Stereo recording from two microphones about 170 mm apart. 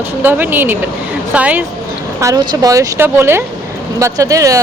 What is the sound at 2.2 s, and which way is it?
Speech, 20° right (ahead or behind).